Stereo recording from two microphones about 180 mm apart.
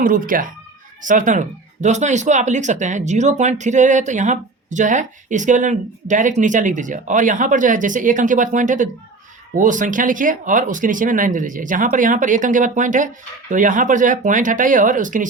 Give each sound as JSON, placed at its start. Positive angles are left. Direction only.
{"t": 0.0, "sound": "speech", "side_deg": -50}